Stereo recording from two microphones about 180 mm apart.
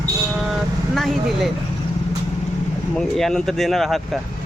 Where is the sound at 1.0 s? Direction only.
Centre (ahead or behind).